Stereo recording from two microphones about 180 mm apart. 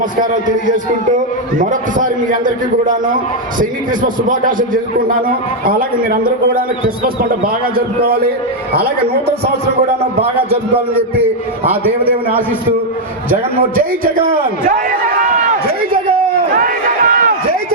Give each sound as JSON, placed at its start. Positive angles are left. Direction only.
{"t": 0.2, "sound": "a man's voice", "side_deg": -45}
{"t": 10.9, "sound": "a man's voice", "side_deg": -10}
{"t": 13.7, "sound": "a man's voice", "side_deg": -50}
{"t": 16.6, "sound": "a sound", "side_deg": -50}